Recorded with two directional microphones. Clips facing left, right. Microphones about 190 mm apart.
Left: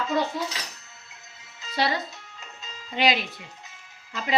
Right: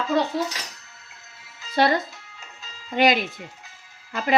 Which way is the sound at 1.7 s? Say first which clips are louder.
Right 6 dB; 50° right (ahead or behind).